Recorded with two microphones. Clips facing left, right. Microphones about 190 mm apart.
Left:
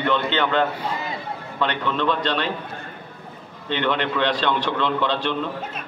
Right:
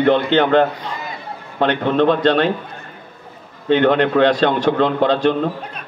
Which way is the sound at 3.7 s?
45° right (ahead or behind).